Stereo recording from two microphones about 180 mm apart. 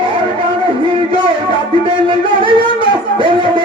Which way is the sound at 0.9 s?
30° right (ahead or behind).